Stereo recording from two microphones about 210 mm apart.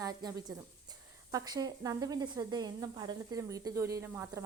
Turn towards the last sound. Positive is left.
turn(degrees=-10)  # may be behind; listen again after turning